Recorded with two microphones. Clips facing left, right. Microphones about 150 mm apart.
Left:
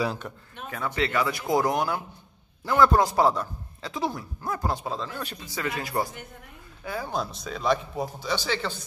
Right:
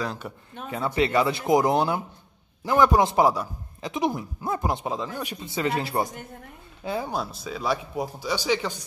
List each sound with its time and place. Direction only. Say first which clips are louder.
0.2 s a man's voice: right 1 dB; 5° right (ahead or behind)
0.7 s a man's voice: right 4 dB; 25° right (ahead or behind)
5.4 s speech: right 6 dB; 25° right (ahead or behind)
7.1 s a man's voice: even; 5° right (ahead or behind)